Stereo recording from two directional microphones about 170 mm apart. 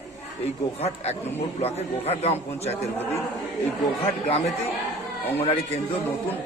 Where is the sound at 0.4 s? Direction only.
40° left (ahead or behind).